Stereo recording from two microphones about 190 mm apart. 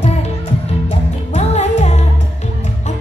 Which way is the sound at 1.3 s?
35° left (ahead or behind).